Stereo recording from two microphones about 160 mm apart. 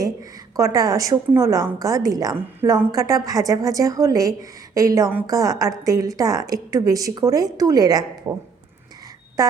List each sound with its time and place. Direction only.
0.5 s a woman's voice: 20° right (ahead or behind)